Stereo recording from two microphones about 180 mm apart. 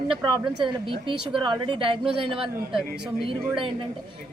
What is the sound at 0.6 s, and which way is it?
A woman's voice, 25° right (ahead or behind).